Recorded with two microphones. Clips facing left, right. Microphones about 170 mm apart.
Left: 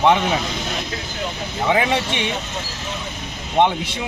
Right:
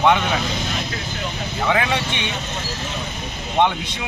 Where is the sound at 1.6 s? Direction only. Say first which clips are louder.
Left 2 dB; 25° left (ahead or behind).